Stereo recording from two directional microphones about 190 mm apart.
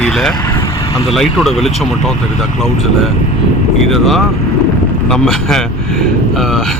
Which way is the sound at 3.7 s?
Centre (ahead or behind).